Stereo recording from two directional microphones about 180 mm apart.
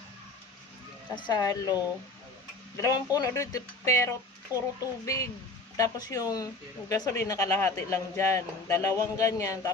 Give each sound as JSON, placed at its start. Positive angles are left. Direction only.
{"t": 1.1, "sound": "speech", "side_deg": 25}
{"t": 2.7, "sound": "speech", "side_deg": 20}
{"t": 4.5, "sound": "a child's voice", "side_deg": -10}
{"t": 5.0, "sound": "speech", "side_deg": 15}